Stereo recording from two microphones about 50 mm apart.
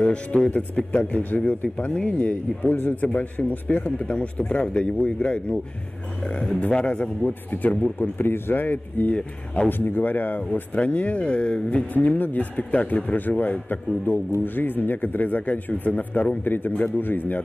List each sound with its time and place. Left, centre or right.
0.0 s speech: left
6.6 s speech: left
7.5 s speech: left